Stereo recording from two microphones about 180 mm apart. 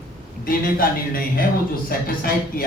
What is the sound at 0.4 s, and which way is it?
A man's voice, 55° left (ahead or behind).